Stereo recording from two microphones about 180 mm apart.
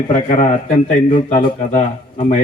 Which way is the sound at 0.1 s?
45° left (ahead or behind).